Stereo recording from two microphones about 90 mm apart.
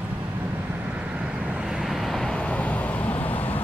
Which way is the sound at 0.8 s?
15° right (ahead or behind).